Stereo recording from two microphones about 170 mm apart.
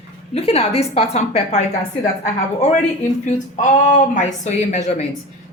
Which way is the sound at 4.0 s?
45° left (ahead or behind).